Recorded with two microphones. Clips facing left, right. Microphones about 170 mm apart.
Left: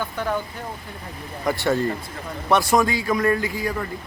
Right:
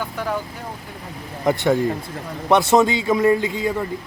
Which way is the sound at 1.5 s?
20° right (ahead or behind).